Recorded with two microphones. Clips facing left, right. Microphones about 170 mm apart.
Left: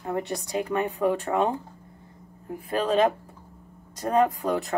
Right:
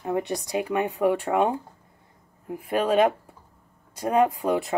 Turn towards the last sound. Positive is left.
turn(degrees=-10)  # may be behind; listen again after turning